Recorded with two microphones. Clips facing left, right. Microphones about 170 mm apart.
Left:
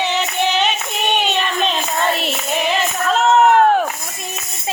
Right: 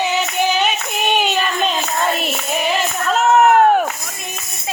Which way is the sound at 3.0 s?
5° right (ahead or behind).